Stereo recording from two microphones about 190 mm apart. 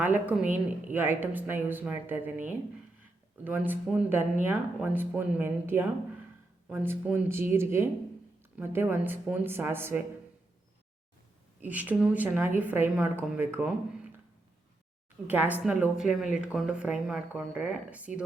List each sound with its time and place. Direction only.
0.0 s a woman's voice: 10° right (ahead or behind)
11.6 s a woman's voice: 10° right (ahead or behind)
15.3 s speech: 10° right (ahead or behind)